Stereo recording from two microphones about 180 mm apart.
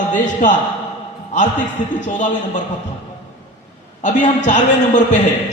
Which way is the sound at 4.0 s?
45° left (ahead or behind).